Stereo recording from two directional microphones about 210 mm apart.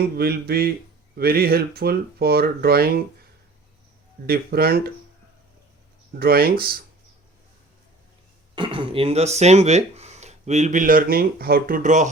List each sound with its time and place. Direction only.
0.2 s speech: 50° right (ahead or behind)
4.3 s speech: 45° right (ahead or behind)
6.1 s speech: 45° right (ahead or behind)
8.5 s speech: 25° right (ahead or behind)